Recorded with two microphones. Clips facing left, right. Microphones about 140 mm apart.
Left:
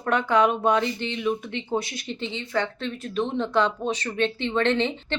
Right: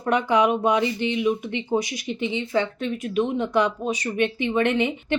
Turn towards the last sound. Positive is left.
turn(degrees=-15)  # may be behind; listen again after turning